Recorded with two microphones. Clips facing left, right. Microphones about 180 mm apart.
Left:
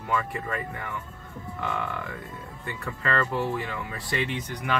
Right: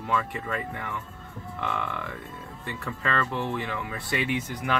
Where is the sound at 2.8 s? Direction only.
Centre (ahead or behind).